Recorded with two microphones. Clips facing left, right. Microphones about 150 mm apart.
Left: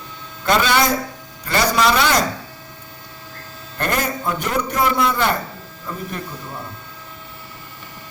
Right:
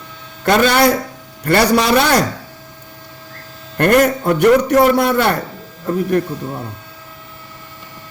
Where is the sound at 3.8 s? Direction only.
65° right (ahead or behind).